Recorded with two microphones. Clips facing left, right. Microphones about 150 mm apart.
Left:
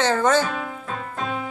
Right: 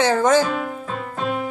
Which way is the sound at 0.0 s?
10° right (ahead or behind).